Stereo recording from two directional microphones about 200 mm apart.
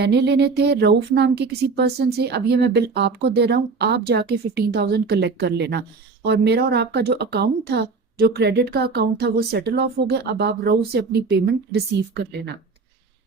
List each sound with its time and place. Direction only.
0.0 s speech: 55° right (ahead or behind)